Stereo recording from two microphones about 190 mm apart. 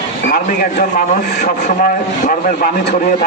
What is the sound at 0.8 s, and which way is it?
A man's voice, 45° left (ahead or behind).